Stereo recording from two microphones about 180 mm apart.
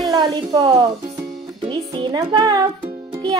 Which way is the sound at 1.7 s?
25° right (ahead or behind).